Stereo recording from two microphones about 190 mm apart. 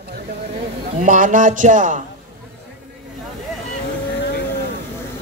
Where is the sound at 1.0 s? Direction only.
45° right (ahead or behind).